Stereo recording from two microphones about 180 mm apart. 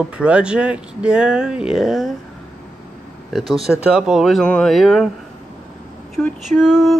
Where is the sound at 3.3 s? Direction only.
Centre (ahead or behind).